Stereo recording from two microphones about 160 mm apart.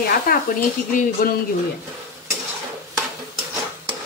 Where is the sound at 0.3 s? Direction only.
70° left (ahead or behind).